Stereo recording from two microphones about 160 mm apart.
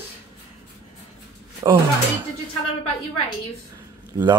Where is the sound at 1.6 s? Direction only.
30° right (ahead or behind).